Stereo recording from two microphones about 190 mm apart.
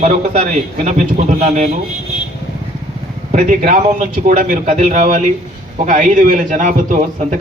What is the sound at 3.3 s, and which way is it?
A man's voice, 40° right (ahead or behind).